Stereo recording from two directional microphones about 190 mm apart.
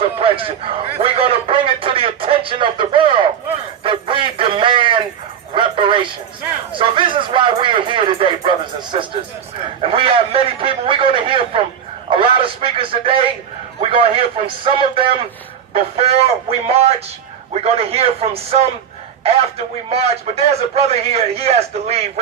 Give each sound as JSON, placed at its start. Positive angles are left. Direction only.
{"t": 0.3, "sound": "a sound", "side_deg": -30}
{"t": 12.1, "sound": "radio", "side_deg": -30}
{"t": 13.9, "sound": "a man's voice", "side_deg": -30}
{"t": 19.9, "sound": "a man's voice", "side_deg": -30}